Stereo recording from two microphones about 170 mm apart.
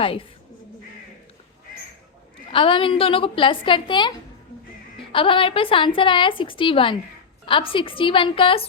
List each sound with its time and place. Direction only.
0.0 s a woman's voice: 30° left (ahead or behind)
2.5 s a woman's voice: 30° left (ahead or behind)
5.1 s a woman's voice: 30° left (ahead or behind)